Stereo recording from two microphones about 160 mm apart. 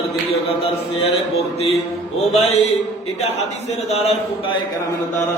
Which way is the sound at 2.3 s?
45° left (ahead or behind).